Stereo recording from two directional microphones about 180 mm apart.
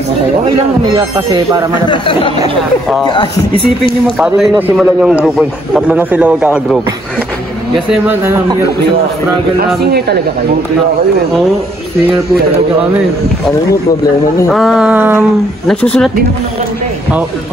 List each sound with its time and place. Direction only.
0.9 s speech: 20° right (ahead or behind)
1.9 s speech: 30° left (ahead or behind)
4.2 s a man's voice: 5° right (ahead or behind)
7.9 s a man's voice: 10° right (ahead or behind)
9.8 s speech: 65° right (ahead or behind)
14.5 s a sound: centre (ahead or behind)
15.6 s a sound: 5° left (ahead or behind)